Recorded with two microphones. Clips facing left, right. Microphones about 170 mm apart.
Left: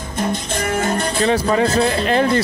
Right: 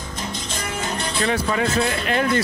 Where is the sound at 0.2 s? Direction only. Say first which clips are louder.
Left 10 dB; 55° left (ahead or behind).